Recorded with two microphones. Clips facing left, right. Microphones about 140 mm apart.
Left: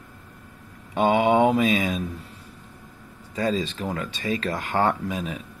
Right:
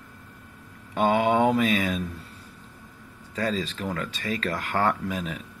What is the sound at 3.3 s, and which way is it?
Speech, 20° left (ahead or behind).